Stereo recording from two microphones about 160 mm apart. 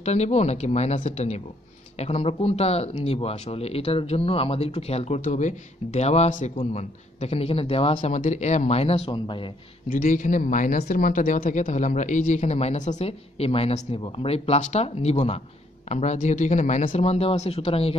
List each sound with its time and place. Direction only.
0.0 s speech: 45° left (ahead or behind)
9.8 s speech: 55° left (ahead or behind)
10.8 s speech: 65° left (ahead or behind); by 17.9 s 40° left (ahead or behind)